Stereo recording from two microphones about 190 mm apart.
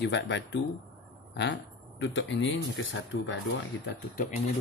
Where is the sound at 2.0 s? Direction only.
70° left (ahead or behind).